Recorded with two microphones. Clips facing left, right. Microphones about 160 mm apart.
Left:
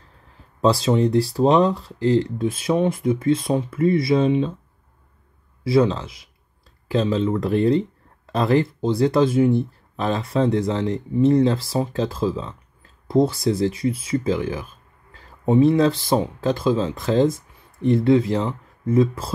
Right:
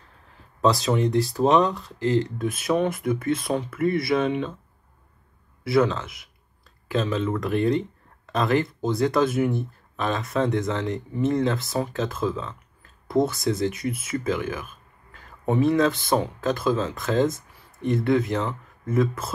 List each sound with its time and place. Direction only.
0.6 s speech: 25° left (ahead or behind)
5.6 s speech: 25° left (ahead or behind)